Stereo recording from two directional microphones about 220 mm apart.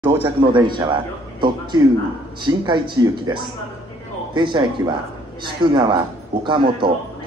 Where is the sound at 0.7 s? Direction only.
20° right (ahead or behind).